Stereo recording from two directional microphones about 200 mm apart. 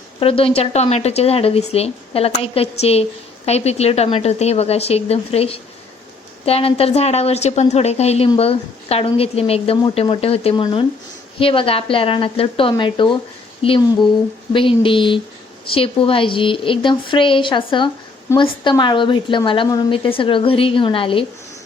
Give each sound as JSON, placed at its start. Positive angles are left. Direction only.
{"t": 0.2, "sound": "a woman's voice", "side_deg": 25}